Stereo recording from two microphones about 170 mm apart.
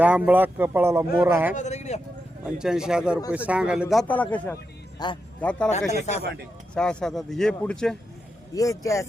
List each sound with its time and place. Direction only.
0.0 s speech: 10° right (ahead or behind)
1.5 s speech: 45° left (ahead or behind)
2.5 s a man's voice: 5° right (ahead or behind)
4.0 s a man's voice: 10° left (ahead or behind)
5.0 s speech: 25° left (ahead or behind)
5.4 s a man's voice: 10° left (ahead or behind)
5.9 s a man's voice: 40° left (ahead or behind)
6.7 s a man's voice: 5° left (ahead or behind)
8.5 s speech: 20° left (ahead or behind)